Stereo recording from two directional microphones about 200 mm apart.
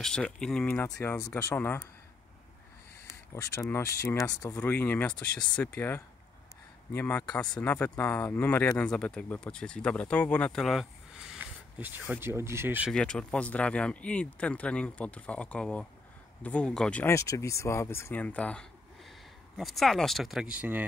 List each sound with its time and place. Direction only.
0.0 s speech: 5° left (ahead or behind)
0.8 s speech: 15° left (ahead or behind)
3.7 s speech: 10° left (ahead or behind); by 12.9 s 10° right (ahead or behind)
12.9 s speech: 5° left (ahead or behind)